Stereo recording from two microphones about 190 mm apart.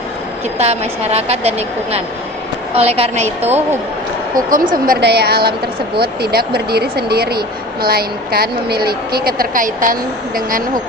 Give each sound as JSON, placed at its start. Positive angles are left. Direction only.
{"t": 0.6, "sound": "a woman's voice", "side_deg": -35}
{"t": 4.4, "sound": "a woman's voice", "side_deg": -45}
{"t": 4.9, "sound": "a woman's voice", "side_deg": -60}